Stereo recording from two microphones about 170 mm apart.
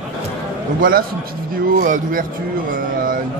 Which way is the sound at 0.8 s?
55° right (ahead or behind).